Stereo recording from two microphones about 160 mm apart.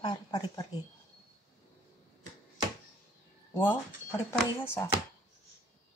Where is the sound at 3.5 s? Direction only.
20° left (ahead or behind).